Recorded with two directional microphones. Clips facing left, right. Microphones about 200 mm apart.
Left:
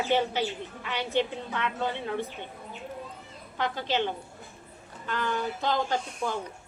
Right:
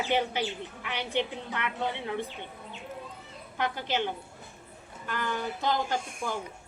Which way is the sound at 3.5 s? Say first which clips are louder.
Left 2 dB; 15° right (ahead or behind).